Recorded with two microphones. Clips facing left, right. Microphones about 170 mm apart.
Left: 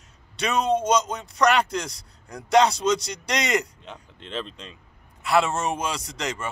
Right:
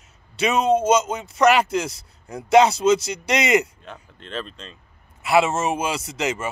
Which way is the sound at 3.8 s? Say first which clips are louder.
Right 1 dB; 20° left (ahead or behind).